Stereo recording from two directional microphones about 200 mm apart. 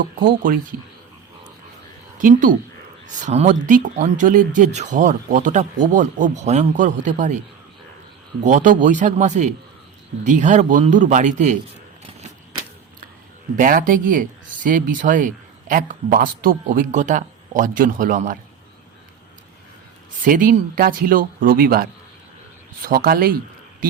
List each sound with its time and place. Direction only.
0.3 s speech: 45° right (ahead or behind)
2.1 s a woman's voice: 40° right (ahead or behind)
8.4 s speech: 40° right (ahead or behind)
13.6 s speech: 45° right (ahead or behind)
20.2 s speech: 40° right (ahead or behind)